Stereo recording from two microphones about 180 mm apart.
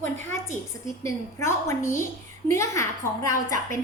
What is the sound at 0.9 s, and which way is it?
A woman's voice, 15° left (ahead or behind).